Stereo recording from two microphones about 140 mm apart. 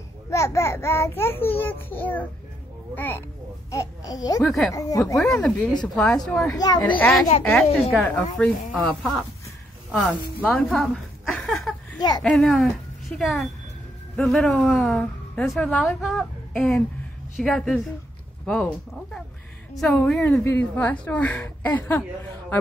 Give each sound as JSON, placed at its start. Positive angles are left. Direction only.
{"t": 0.3, "sound": "speech", "side_deg": 20}
{"t": 3.7, "sound": "babbling", "side_deg": 25}
{"t": 4.5, "sound": "a woman's voice", "side_deg": 0}
{"t": 4.7, "sound": "babbling", "side_deg": 25}
{"t": 5.2, "sound": "a woman's voice", "side_deg": 5}
{"t": 6.5, "sound": "babbling", "side_deg": 30}
{"t": 7.0, "sound": "a woman's voice", "side_deg": 5}
{"t": 10.4, "sound": "a woman's voice", "side_deg": 5}